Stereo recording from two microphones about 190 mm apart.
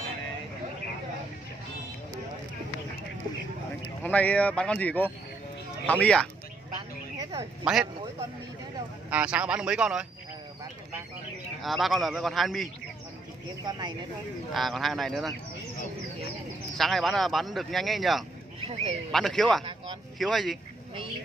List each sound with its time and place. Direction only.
4.0 s speech: 10° left (ahead or behind)
7.2 s a sound: 20° right (ahead or behind)
7.6 s speech: 5° right (ahead or behind)
9.1 s speech: 5° right (ahead or behind)
11.6 s speech: centre (ahead or behind)
13.7 s speech: 20° right (ahead or behind)
14.5 s speech: centre (ahead or behind)
16.7 s speech: centre (ahead or behind)